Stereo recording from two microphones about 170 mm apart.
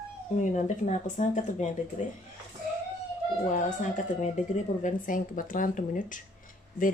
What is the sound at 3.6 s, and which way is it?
Speech, 50° left (ahead or behind).